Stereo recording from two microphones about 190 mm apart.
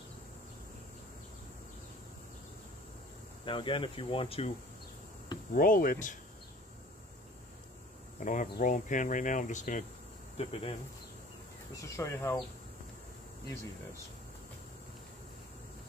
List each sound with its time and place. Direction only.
3.4 s speech: 25° left (ahead or behind)
5.5 s speech: 45° left (ahead or behind)
8.3 s speech: 45° left (ahead or behind)
10.3 s speech: 30° left (ahead or behind)
11.7 s speech: 15° left (ahead or behind)